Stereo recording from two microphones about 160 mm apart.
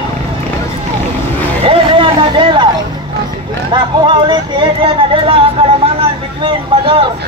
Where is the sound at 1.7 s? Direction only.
30° right (ahead or behind).